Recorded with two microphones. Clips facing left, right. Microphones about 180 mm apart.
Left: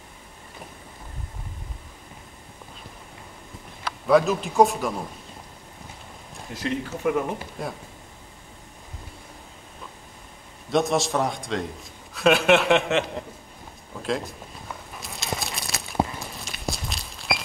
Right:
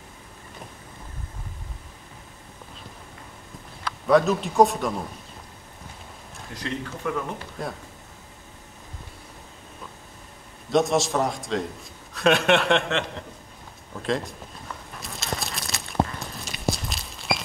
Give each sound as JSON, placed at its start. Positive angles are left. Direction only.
{"t": 4.1, "sound": "a man's voice", "side_deg": 0}
{"t": 6.5, "sound": "speech", "side_deg": 15}
{"t": 7.6, "sound": "a man's voice", "side_deg": 0}
{"t": 10.7, "sound": "a man's voice", "side_deg": 0}
{"t": 14.0, "sound": "a man's voice", "side_deg": 0}
{"t": 15.0, "sound": "a sound", "side_deg": 0}
{"t": 16.2, "sound": "walk", "side_deg": 0}